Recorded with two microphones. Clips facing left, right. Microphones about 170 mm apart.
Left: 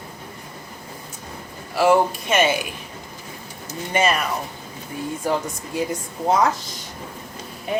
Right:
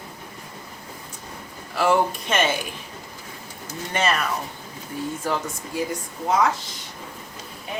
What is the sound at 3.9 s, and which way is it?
Speech, 10° left (ahead or behind).